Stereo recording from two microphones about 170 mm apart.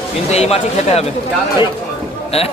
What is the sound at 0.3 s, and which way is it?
Speech, 40° left (ahead or behind).